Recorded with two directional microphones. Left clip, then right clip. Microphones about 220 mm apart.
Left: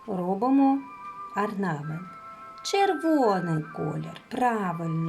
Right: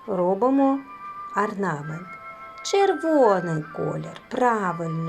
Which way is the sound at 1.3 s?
5° right (ahead or behind).